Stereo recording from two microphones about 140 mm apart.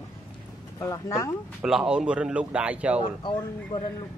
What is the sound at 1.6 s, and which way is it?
Speech, 5° right (ahead or behind).